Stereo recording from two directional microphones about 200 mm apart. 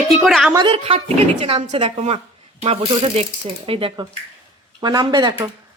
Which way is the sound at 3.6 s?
25° right (ahead or behind).